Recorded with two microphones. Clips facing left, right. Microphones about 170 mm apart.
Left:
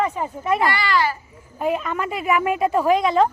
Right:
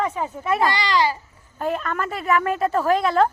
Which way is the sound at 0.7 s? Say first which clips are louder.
Even; 20° right (ahead or behind).